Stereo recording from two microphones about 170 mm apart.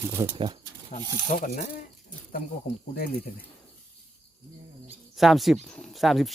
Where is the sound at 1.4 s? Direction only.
60° left (ahead or behind).